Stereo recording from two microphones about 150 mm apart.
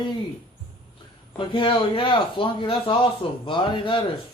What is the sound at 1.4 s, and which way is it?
Speech, 35° left (ahead or behind).